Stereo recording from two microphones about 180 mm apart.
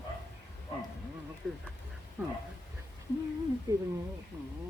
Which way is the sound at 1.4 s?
Centre (ahead or behind).